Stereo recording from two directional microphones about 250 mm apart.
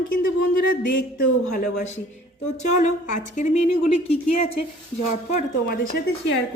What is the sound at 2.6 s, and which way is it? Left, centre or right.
A woman's voice, left.